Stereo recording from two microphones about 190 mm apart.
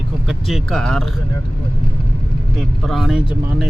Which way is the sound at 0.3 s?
Centre (ahead or behind).